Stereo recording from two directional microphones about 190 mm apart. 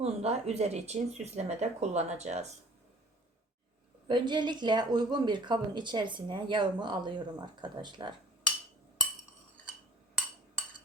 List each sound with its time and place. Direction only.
0.0 s speech: 35° right (ahead or behind)
4.1 s speech: 25° right (ahead or behind)